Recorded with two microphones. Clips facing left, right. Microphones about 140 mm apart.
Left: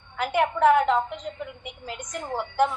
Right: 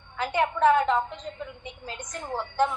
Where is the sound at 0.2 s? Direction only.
15° left (ahead or behind).